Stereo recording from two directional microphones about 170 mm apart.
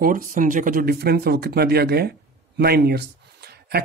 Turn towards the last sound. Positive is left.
turn(degrees=-70)  # may be behind; listen again after turning